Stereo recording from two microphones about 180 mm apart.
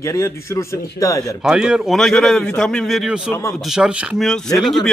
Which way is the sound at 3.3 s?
15° left (ahead or behind).